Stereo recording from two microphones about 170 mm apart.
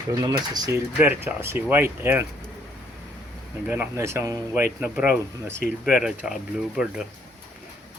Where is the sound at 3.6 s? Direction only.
15° right (ahead or behind).